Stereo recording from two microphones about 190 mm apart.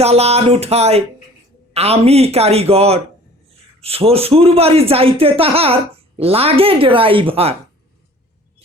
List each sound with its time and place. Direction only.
0.0 s a man's voice: 35° right (ahead or behind)